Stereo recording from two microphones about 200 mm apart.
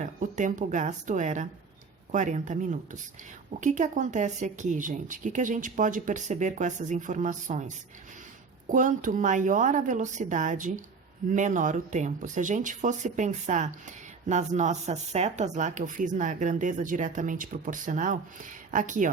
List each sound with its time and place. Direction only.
0.0 s speech: 40° right (ahead or behind)
8.7 s speech: 40° right (ahead or behind)